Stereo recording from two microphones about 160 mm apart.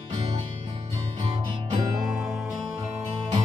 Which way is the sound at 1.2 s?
35° right (ahead or behind).